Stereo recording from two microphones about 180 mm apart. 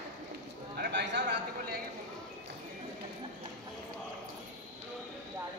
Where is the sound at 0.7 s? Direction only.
70° right (ahead or behind).